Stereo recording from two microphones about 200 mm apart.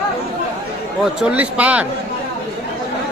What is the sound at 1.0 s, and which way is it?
Speech, 5° right (ahead or behind).